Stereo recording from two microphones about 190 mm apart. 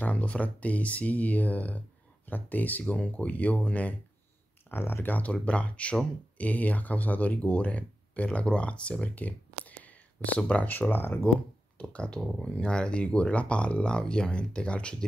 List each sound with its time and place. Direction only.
0.0 s speech: 5° left (ahead or behind)